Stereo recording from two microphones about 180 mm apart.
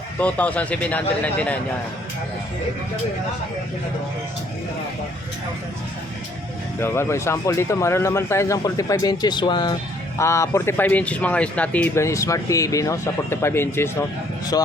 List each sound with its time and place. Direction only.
0.2 s a man's voice: 10° left (ahead or behind)
6.7 s a man's voice: 15° left (ahead or behind)